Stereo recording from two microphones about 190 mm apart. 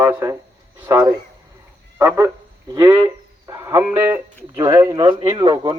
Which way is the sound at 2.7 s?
15° right (ahead or behind).